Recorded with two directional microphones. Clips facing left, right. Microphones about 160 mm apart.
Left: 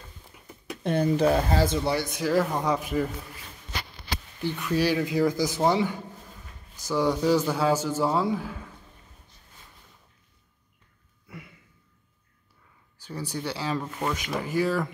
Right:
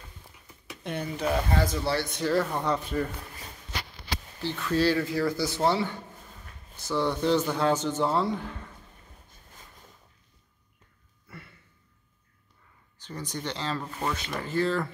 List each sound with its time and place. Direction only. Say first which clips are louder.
0.7 s speech: left 9 dB; 35° left (ahead or behind)
1.9 s speech: left 1 dB; 10° left (ahead or behind)
4.4 s a man's voice: even; 15° left (ahead or behind)
11.2 s a sound: left 3 dB; 10° left (ahead or behind)
13.0 s speech: left 3 dB; 10° left (ahead or behind)